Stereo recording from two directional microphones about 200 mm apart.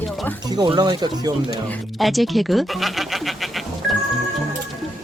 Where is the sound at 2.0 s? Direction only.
Centre (ahead or behind).